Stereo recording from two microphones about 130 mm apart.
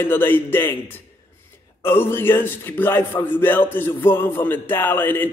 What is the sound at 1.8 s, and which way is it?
A man's voice, 15° left (ahead or behind).